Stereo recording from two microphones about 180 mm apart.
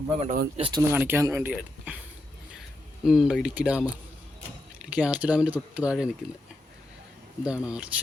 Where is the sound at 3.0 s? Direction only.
5° right (ahead or behind).